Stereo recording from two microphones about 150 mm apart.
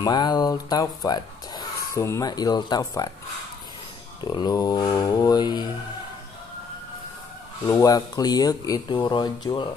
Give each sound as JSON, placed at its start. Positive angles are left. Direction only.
{"t": 0.0, "sound": "speech", "side_deg": 25}
{"t": 4.2, "sound": "speech", "side_deg": 30}
{"t": 7.6, "sound": "speech", "side_deg": 25}